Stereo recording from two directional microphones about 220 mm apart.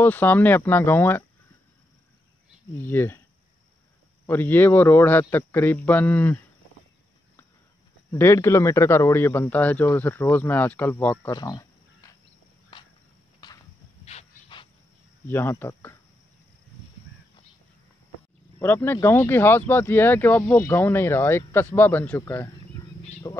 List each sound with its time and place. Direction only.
0.0 s speech: 10° left (ahead or behind)
2.8 s speech: 10° left (ahead or behind)
4.3 s speech: 10° left (ahead or behind)
8.1 s speech: 10° left (ahead or behind)
13.4 s a sound: 20° left (ahead or behind)
14.0 s pant: 25° left (ahead or behind)
15.2 s speech: 10° left (ahead or behind)
18.6 s speech: 10° left (ahead or behind)